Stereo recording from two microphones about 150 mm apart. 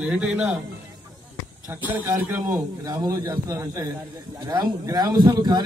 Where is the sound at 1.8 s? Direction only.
15° right (ahead or behind).